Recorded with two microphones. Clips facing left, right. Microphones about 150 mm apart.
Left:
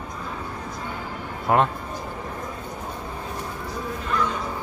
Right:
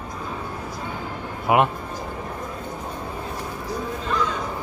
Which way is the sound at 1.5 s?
10° right (ahead or behind).